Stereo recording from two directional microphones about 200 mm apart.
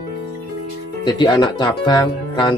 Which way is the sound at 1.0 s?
20° left (ahead or behind).